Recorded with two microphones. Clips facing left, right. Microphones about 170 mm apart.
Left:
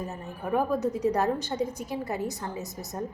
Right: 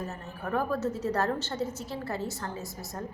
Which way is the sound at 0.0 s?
15° left (ahead or behind).